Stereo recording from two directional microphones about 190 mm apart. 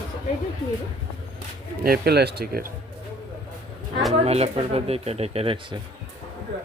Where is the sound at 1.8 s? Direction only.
55° right (ahead or behind).